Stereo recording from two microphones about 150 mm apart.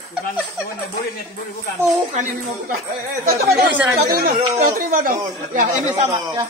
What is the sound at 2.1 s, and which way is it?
Speech, 60° right (ahead or behind).